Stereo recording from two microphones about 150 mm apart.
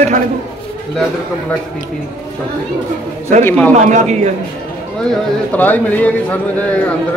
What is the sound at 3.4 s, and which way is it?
Speech, 10° left (ahead or behind).